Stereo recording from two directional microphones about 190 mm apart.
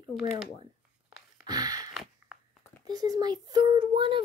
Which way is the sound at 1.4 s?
20° right (ahead or behind).